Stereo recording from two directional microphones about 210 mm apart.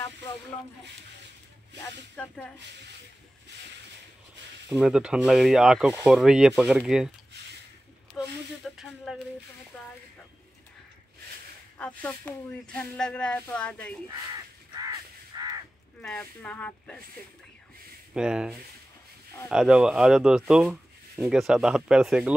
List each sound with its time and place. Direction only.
1.8 s speech: 5° left (ahead or behind)
4.6 s speech: 5° right (ahead or behind)
8.1 s a sound: 5° left (ahead or behind)
11.8 s speech: 5° left (ahead or behind)
15.3 s a sound: 15° right (ahead or behind)
16.0 s speech: 5° left (ahead or behind)
18.1 s speech: 5° right (ahead or behind)